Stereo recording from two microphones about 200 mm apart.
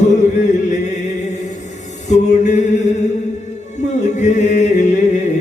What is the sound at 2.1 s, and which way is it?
Mantra, 35° left (ahead or behind).